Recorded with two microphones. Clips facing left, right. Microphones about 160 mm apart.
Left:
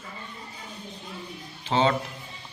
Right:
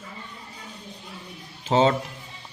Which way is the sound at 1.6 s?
40° right (ahead or behind).